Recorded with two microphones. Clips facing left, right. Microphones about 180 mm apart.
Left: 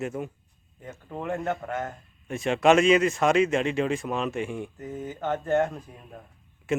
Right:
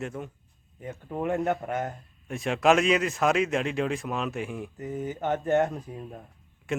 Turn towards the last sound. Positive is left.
turn(degrees=0)  # may be behind; listen again after turning